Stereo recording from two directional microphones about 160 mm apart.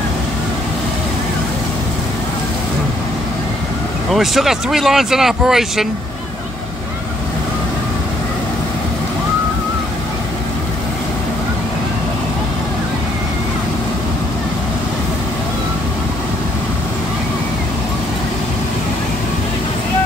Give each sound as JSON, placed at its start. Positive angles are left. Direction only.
{"t": 4.1, "sound": "speech", "side_deg": 0}